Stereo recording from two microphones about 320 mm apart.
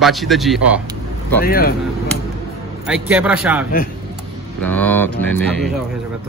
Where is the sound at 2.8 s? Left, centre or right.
Centre.